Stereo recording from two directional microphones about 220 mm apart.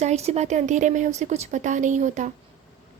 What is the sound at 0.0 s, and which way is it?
A woman's voice, 30° right (ahead or behind).